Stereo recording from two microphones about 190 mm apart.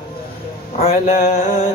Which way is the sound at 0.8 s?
35° left (ahead or behind).